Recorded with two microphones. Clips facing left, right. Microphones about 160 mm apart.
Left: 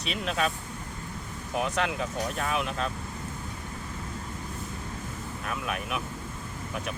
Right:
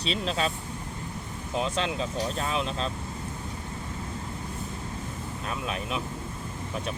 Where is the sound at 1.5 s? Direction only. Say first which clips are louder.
Even; 25° right (ahead or behind).